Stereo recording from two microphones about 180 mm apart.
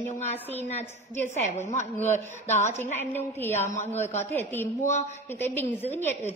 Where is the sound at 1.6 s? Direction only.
40° left (ahead or behind).